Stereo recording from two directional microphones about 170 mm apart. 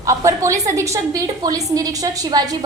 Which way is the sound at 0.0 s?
20° right (ahead or behind).